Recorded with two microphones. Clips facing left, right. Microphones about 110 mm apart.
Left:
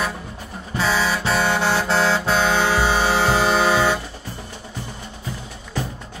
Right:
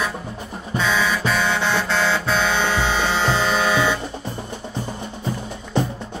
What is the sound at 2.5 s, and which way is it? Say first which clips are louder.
Music: left 2 dB; 40° left (ahead or behind).